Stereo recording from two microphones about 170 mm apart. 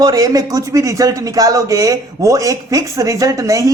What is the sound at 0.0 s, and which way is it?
Speech, 20° right (ahead or behind).